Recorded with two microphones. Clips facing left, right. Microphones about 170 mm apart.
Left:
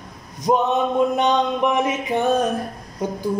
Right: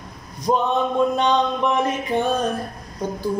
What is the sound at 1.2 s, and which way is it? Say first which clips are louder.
Music: left 1 dB; 20° left (ahead or behind).